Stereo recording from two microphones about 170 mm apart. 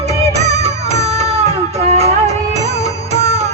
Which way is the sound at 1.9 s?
40° right (ahead or behind).